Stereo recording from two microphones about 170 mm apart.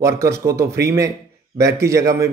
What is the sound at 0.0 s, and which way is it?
A man's voice, 15° right (ahead or behind).